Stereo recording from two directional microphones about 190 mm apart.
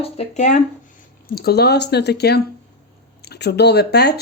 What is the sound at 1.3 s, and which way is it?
Speech, 55° left (ahead or behind).